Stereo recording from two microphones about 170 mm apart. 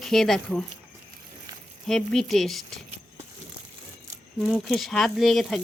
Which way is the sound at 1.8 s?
Centre (ahead or behind).